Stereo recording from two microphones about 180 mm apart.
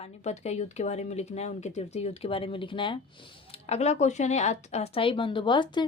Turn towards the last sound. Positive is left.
turn(degrees=25)  # may be behind; listen again after turning